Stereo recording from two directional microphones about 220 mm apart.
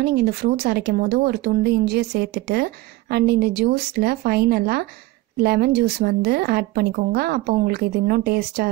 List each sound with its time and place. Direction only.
0.0 s speech: 45° right (ahead or behind)